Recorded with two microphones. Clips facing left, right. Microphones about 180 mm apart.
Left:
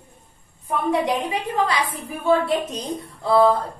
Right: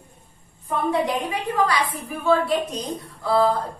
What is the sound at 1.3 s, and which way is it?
A woman's voice, 25° left (ahead or behind).